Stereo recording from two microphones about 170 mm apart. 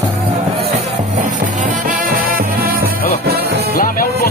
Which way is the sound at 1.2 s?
50° right (ahead or behind).